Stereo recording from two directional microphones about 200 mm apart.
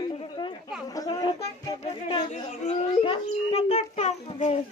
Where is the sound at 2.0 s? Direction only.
30° left (ahead or behind).